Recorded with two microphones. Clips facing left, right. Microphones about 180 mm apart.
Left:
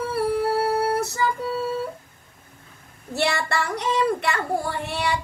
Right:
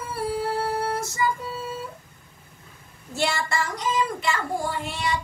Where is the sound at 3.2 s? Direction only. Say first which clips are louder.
Left 2 dB; 65° left (ahead or behind).